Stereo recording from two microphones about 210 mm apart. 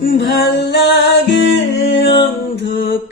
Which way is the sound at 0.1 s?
50° left (ahead or behind).